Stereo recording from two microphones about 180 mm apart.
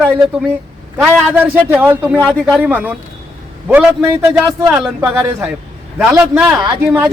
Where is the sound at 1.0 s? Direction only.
10° right (ahead or behind).